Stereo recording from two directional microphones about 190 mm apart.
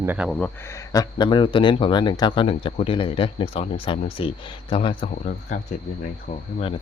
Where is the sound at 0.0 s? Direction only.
10° right (ahead or behind).